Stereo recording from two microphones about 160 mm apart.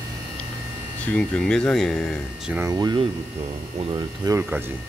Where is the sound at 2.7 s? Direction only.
25° right (ahead or behind).